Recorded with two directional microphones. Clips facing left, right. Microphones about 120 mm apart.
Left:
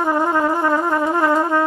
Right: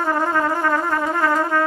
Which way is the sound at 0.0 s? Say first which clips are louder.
Left 2 dB; 15° left (ahead or behind).